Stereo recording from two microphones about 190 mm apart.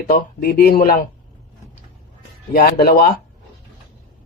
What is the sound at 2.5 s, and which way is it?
Speech, 55° left (ahead or behind).